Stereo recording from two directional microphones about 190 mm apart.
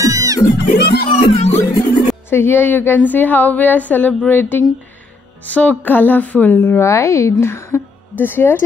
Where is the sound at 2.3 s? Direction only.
10° left (ahead or behind).